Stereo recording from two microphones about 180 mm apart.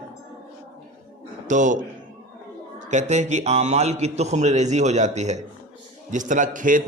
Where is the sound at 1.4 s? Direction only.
45° right (ahead or behind).